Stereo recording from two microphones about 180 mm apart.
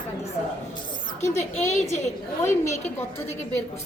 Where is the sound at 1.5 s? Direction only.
40° left (ahead or behind).